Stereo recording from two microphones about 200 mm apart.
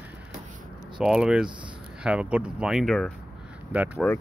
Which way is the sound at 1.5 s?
25° right (ahead or behind).